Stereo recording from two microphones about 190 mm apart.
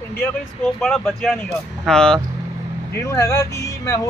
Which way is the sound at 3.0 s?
15° left (ahead or behind).